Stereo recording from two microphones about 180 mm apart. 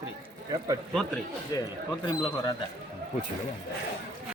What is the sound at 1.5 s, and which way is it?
Speech, 20° left (ahead or behind).